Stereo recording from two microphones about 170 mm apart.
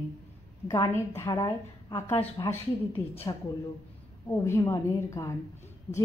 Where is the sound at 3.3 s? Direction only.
25° left (ahead or behind).